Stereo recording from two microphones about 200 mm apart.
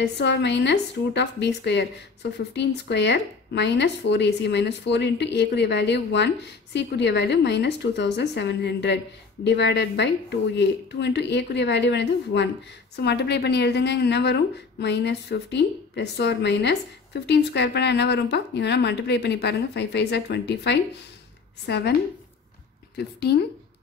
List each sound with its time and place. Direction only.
0.0 s speech: 60° left (ahead or behind)